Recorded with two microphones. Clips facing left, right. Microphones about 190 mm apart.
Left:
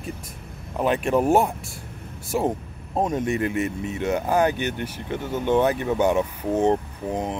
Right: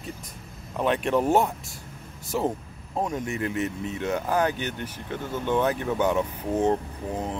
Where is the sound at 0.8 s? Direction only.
5° left (ahead or behind).